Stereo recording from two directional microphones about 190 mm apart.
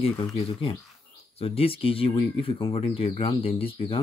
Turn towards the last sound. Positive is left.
turn(degrees=30)  # may be behind; listen again after turning